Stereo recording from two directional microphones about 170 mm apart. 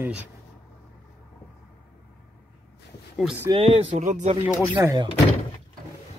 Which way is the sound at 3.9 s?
45° right (ahead or behind).